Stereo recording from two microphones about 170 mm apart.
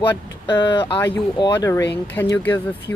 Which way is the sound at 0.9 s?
10° left (ahead or behind).